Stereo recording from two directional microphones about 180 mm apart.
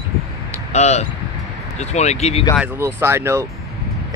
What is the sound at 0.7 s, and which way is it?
Speech, 40° left (ahead or behind).